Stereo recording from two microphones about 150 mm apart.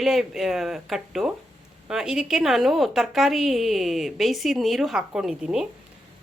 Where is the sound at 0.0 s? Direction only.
Centre (ahead or behind).